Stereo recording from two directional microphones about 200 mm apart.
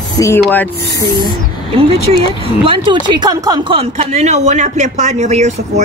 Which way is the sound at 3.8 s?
30° right (ahead or behind).